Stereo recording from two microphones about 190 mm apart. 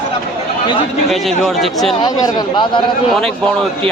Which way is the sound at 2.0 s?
25° left (ahead or behind).